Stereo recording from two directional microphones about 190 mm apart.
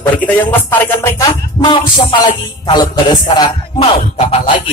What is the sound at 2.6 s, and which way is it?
A man's voice, 25° left (ahead or behind).